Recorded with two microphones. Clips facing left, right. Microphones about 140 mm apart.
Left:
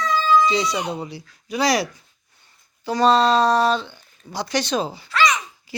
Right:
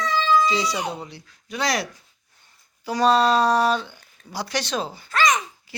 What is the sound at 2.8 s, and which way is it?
Speech, 10° right (ahead or behind).